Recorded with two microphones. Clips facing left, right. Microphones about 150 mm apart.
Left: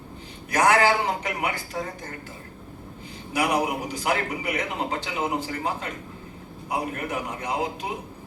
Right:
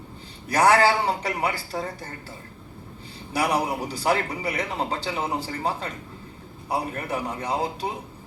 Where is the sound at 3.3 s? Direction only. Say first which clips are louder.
Even; 35° right (ahead or behind).